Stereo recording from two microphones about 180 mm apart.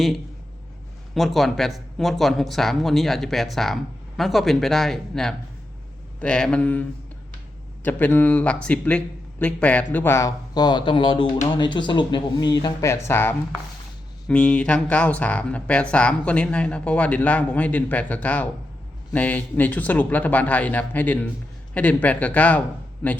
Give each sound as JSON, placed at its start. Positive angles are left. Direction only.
{"t": 1.1, "sound": "speech", "side_deg": 0}
{"t": 7.9, "sound": "speech", "side_deg": 10}